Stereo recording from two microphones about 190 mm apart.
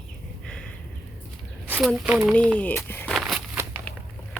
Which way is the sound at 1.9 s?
5° right (ahead or behind).